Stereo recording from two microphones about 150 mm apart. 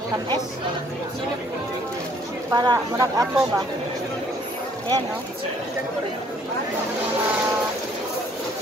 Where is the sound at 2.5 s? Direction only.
25° right (ahead or behind).